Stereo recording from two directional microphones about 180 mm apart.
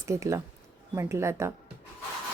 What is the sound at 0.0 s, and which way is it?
A woman's voice, 15° right (ahead or behind).